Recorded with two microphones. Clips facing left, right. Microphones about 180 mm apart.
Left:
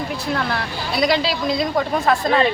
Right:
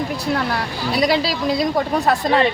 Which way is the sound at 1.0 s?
35° right (ahead or behind).